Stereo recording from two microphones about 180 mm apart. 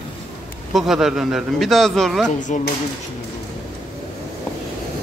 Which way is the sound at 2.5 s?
45° left (ahead or behind).